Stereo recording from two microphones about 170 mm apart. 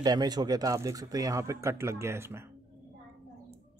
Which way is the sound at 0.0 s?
25° right (ahead or behind).